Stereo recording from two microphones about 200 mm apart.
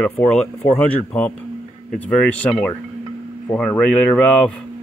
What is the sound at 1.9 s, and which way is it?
Speech, 5° left (ahead or behind).